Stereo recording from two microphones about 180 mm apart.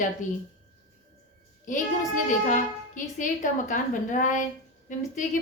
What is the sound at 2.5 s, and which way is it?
A woman's voice, 45° left (ahead or behind).